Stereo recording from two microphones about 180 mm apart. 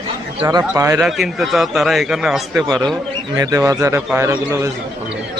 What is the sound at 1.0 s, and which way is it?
A man's voice, centre (ahead or behind).